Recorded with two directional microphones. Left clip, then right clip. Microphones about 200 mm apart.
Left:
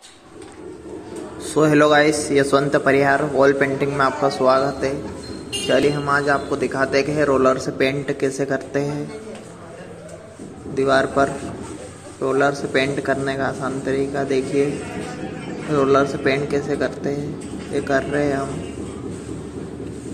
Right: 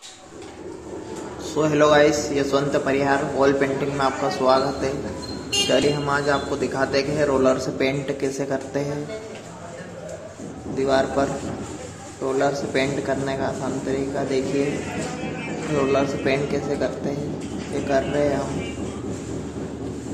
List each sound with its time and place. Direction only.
1.5 s a man's voice: 25° left (ahead or behind)
10.8 s a man's voice: 20° left (ahead or behind)
12.3 s a man's voice: 15° left (ahead or behind)
15.9 s a man's voice: 20° left (ahead or behind)